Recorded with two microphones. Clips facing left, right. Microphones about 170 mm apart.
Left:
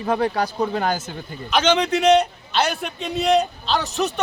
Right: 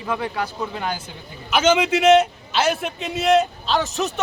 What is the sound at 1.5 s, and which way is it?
A man's voice, 5° right (ahead or behind).